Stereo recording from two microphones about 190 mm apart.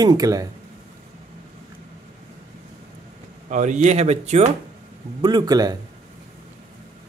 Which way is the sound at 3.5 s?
40° right (ahead or behind).